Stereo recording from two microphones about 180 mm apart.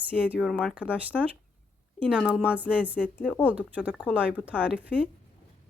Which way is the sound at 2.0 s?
5° right (ahead or behind).